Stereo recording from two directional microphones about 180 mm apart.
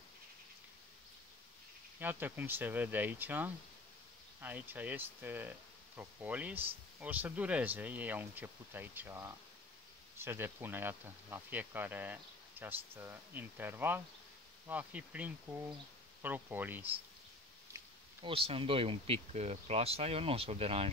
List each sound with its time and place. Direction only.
2.0 s speech: 10° right (ahead or behind)
18.2 s speech: 30° right (ahead or behind)